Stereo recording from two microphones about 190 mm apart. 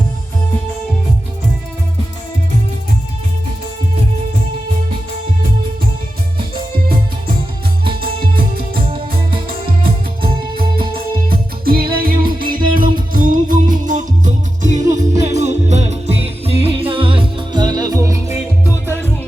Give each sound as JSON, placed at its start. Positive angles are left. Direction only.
{"t": 8.0, "sound": "music", "side_deg": -50}
{"t": 8.8, "sound": "music", "side_deg": -30}
{"t": 11.3, "sound": "music", "side_deg": -50}